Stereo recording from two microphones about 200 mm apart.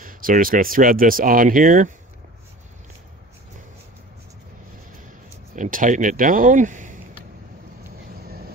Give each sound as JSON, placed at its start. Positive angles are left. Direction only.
{"t": 0.0, "sound": "speech", "side_deg": -45}
{"t": 5.6, "sound": "speech", "side_deg": -40}